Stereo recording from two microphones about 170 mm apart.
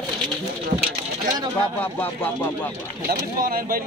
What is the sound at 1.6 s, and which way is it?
Speech, 10° left (ahead or behind).